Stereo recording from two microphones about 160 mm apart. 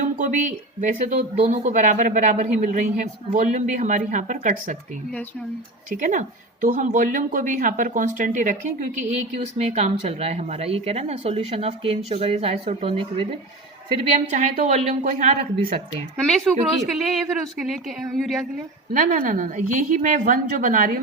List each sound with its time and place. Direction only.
0.0 s speech: 55° right (ahead or behind)
6.0 s speech: 55° right (ahead or behind)
9.4 s speech: 40° right (ahead or behind)
14.1 s speech: 50° right (ahead or behind)
16.2 s a woman's voice: centre (ahead or behind)
18.9 s speech: 60° right (ahead or behind)